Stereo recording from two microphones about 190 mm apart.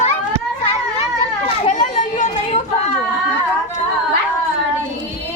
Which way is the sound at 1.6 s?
35° left (ahead or behind).